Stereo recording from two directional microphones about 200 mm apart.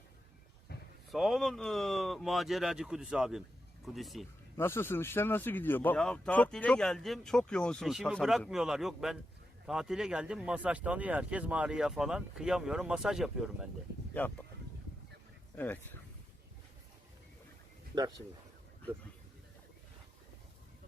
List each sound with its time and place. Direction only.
0.7 s a sound: 55° left (ahead or behind)
1.1 s speech: centre (ahead or behind)
4.5 s speech: 10° left (ahead or behind)
14.1 s speech: 10° left (ahead or behind)
15.5 s speech: 10° left (ahead or behind)
17.9 s speech: 20° right (ahead or behind)